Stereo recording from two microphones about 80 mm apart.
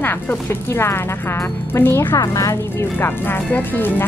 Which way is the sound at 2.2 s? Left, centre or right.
Left.